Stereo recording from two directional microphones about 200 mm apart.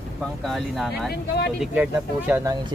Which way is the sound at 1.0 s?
55° left (ahead or behind).